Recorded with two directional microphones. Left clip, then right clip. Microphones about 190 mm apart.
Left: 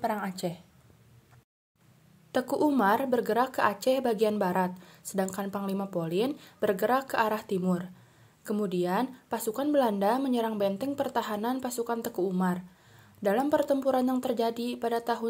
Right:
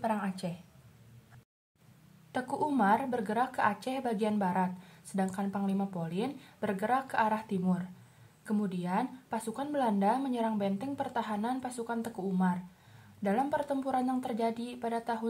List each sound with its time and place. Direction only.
0.0 s a woman's voice: 25° left (ahead or behind)
2.3 s a woman's voice: 25° left (ahead or behind)